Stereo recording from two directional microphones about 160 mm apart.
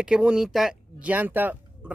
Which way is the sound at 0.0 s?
5° right (ahead or behind).